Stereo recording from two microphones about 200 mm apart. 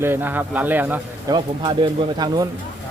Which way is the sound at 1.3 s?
20° right (ahead or behind).